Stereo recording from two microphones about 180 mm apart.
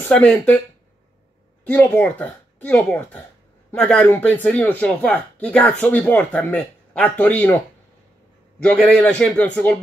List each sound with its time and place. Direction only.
0.1 s speech: 5° left (ahead or behind)
1.6 s speech: 10° left (ahead or behind)
8.8 s speech: 5° left (ahead or behind)